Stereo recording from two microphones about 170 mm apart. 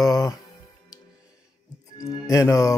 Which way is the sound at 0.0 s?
20° left (ahead or behind).